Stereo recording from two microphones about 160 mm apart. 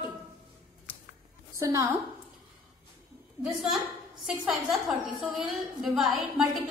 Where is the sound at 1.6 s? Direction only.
20° right (ahead or behind).